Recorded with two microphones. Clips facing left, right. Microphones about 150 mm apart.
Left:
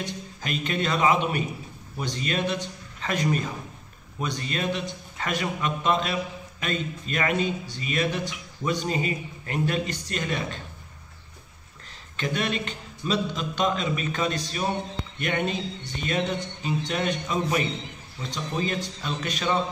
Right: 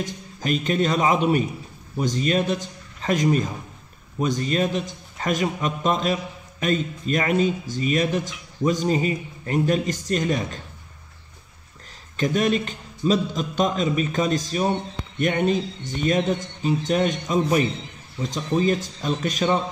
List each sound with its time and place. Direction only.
0.0 s speech: 40° right (ahead or behind)
12.2 s speech: 40° right (ahead or behind)